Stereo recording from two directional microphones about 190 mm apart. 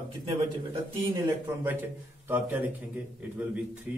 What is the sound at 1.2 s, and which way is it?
A man's voice, 10° right (ahead or behind).